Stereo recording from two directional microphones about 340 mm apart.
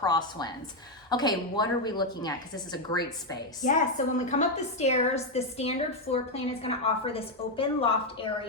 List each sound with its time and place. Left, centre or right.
0.0 s a woman's voice: centre
3.6 s a woman's voice: left